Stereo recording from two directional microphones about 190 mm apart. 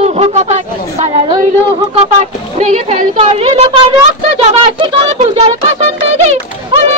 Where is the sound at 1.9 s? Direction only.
35° right (ahead or behind).